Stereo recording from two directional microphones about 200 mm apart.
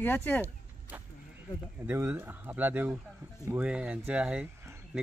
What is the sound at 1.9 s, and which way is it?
Speech, 10° right (ahead or behind).